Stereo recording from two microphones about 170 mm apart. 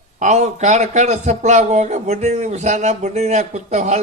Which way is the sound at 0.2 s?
45° right (ahead or behind).